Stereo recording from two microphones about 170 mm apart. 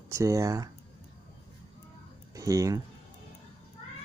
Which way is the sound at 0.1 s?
20° right (ahead or behind).